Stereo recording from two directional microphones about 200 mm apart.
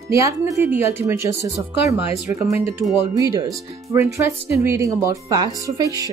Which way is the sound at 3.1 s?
15° right (ahead or behind).